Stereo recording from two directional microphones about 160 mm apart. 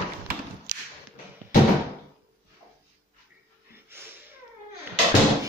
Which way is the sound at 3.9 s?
15° right (ahead or behind).